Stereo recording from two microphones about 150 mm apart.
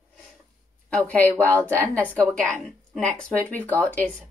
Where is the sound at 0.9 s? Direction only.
10° left (ahead or behind).